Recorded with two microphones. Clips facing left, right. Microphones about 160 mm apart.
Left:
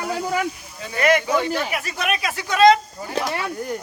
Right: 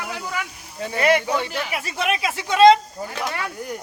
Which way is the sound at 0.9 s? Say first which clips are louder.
Left 1 dB; 30° right (ahead or behind).